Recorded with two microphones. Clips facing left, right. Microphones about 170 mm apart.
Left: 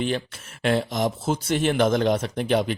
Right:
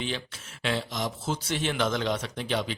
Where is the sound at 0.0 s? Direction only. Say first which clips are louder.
Left 8 dB; 50° left (ahead or behind).